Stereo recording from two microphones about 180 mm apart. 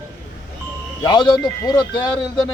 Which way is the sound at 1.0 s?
25° left (ahead or behind).